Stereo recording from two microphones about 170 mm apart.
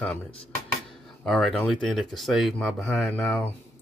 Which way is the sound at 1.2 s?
5° left (ahead or behind).